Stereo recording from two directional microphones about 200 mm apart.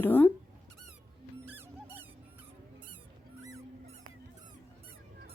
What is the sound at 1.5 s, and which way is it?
Music, 10° right (ahead or behind).